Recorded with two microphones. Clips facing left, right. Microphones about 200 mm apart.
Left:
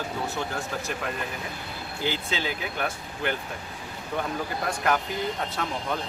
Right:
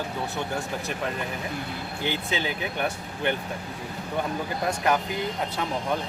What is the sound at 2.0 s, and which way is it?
Speech, 20° right (ahead or behind).